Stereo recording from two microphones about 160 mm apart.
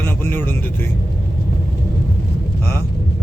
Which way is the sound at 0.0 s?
15° left (ahead or behind).